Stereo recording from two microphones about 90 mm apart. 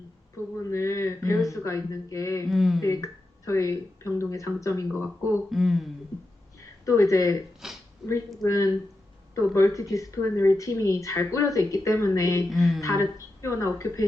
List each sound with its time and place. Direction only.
0.5 s a sound: 35° left (ahead or behind)
1.5 s speech: 35° left (ahead or behind)
2.5 s speech: centre (ahead or behind)
2.8 s speech: 35° left (ahead or behind)
4.9 s speech: 25° right (ahead or behind)
5.5 s speech: centre (ahead or behind)
6.6 s a sound: 35° left (ahead or behind)
7.6 s speech: 5° right (ahead or behind)
8.4 s speech: 35° left (ahead or behind)
12.5 s speech: centre (ahead or behind)
12.8 s speech: 35° left (ahead or behind)